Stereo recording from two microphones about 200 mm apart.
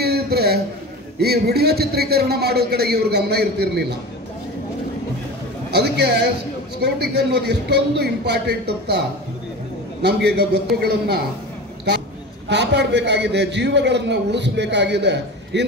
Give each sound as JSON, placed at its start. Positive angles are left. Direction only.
{"t": 0.0, "sound": "a sound", "side_deg": -50}
{"t": 1.2, "sound": "a man's voice", "side_deg": -55}
{"t": 5.7, "sound": "a man's voice", "side_deg": -55}
{"t": 10.0, "sound": "a man's voice", "side_deg": -55}
{"t": 12.4, "sound": "a man's voice", "side_deg": -60}